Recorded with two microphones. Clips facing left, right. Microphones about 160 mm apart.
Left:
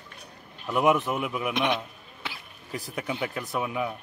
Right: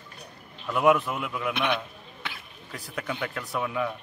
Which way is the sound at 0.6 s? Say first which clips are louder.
Right 1 dB; 15° left (ahead or behind).